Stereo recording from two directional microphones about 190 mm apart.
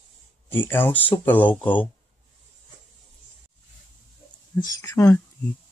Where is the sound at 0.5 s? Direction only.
10° left (ahead or behind).